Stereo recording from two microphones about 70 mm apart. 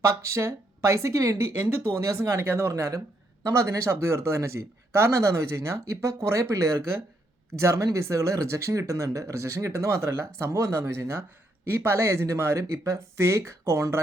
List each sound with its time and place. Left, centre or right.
0.0 s speech: right